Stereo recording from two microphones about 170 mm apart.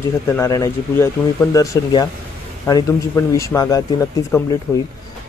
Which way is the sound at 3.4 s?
20° left (ahead or behind).